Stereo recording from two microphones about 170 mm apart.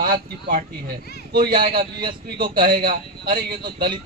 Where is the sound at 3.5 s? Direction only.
25° right (ahead or behind).